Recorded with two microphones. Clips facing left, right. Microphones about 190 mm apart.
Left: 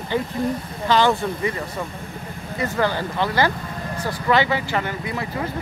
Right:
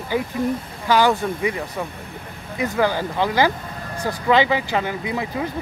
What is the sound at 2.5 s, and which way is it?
Speech, 10° right (ahead or behind).